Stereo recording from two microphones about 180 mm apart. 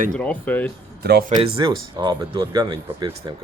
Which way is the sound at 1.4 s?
30° right (ahead or behind).